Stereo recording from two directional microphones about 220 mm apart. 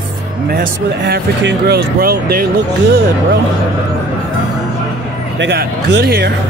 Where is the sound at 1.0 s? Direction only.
45° right (ahead or behind).